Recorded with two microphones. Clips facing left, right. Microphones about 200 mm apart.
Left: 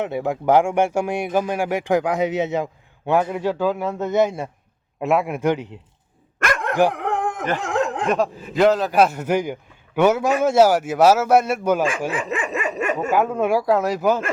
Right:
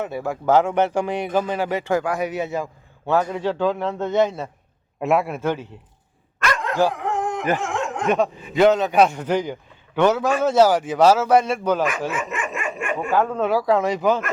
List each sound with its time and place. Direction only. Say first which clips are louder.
0.0 s a man's voice: left 2 dB; 20° left (ahead or behind); by 5.3 s centre (ahead or behind)
5.3 s speech: left 3 dB; 15° left (ahead or behind)
6.4 s dog: left 2 dB; 55° left (ahead or behind)
7.6 s snicker: left 3 dB; 35° left (ahead or behind)
8.0 s a man's voice: right 1 dB; centre (ahead or behind)
12.1 s dog: left 3 dB; 35° left (ahead or behind)
13.1 s speech: even; 10° left (ahead or behind)